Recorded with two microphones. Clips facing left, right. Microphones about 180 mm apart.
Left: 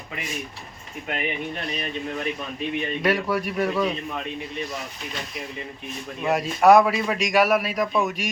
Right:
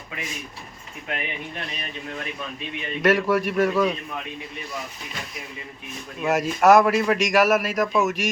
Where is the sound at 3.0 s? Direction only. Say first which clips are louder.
Right 5 dB; centre (ahead or behind).